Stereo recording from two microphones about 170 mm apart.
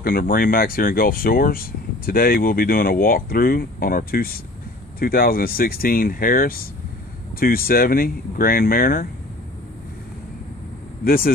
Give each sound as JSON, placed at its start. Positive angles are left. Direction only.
{"t": 0.0, "sound": "speech", "side_deg": 55}
{"t": 11.1, "sound": "speech", "side_deg": 60}